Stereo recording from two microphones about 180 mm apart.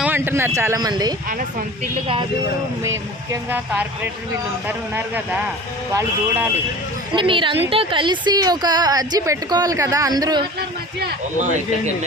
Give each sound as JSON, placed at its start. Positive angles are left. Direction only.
{"t": 0.0, "sound": "speech", "side_deg": -10}
{"t": 1.3, "sound": "speech", "side_deg": -50}
{"t": 3.5, "sound": "speech", "side_deg": -10}
{"t": 7.1, "sound": "a woman's voice", "side_deg": -25}